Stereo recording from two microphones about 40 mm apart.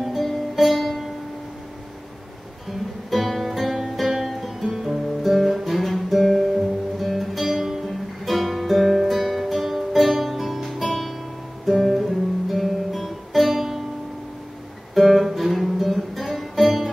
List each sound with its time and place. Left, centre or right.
0.0 s music: centre
3.1 s music: centre
4.3 s guitar: centre
7.0 s music: centre
11.6 s guitar: centre
15.0 s music: centre